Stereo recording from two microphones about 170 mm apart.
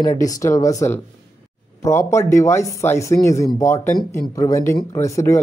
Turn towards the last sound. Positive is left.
turn(degrees=15)  # may be behind; listen again after turning